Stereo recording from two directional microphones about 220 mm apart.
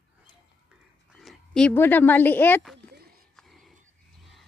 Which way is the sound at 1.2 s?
Centre (ahead or behind).